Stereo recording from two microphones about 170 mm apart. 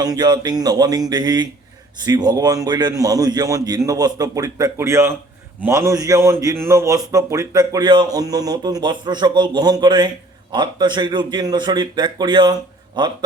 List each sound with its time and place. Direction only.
0.0 s a man's voice: 25° right (ahead or behind)